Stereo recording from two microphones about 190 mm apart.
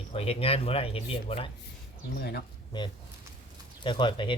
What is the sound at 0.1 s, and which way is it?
Speech, 30° left (ahead or behind).